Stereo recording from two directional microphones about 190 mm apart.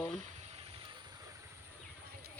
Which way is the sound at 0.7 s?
25° right (ahead or behind).